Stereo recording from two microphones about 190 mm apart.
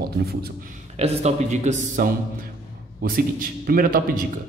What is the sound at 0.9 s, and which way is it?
Speech, 35° right (ahead or behind).